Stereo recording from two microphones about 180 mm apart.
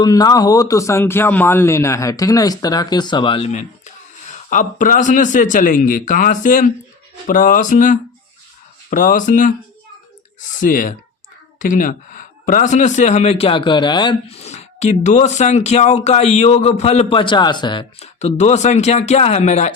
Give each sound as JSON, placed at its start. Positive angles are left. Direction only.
{"t": 0.0, "sound": "a man's voice", "side_deg": 20}
{"t": 10.6, "sound": "speech", "side_deg": 45}